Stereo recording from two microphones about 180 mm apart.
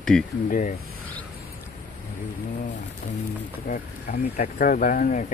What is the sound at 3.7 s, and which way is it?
Speech, 50° left (ahead or behind).